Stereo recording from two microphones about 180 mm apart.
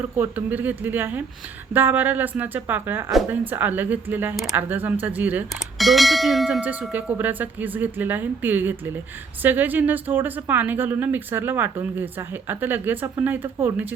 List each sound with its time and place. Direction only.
0.2 s speech: 10° right (ahead or behind)